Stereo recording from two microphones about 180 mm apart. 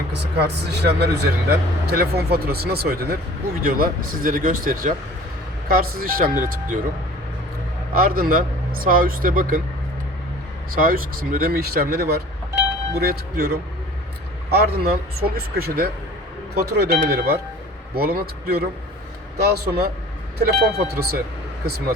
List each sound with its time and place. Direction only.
0.1 s a man's voice: 70° right (ahead or behind); by 6.7 s 50° right (ahead or behind)
7.9 s a man's voice: 55° right (ahead or behind)
10.8 s speech: 55° right (ahead or behind)